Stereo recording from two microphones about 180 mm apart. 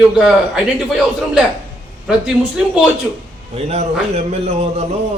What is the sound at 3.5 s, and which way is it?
A man's voice, 35° right (ahead or behind).